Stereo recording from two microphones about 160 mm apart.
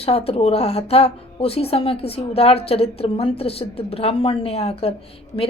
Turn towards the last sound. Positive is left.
turn(degrees=35)  # may be behind; listen again after turning